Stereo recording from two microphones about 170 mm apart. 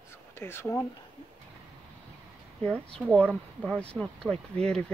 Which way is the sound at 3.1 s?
5° left (ahead or behind).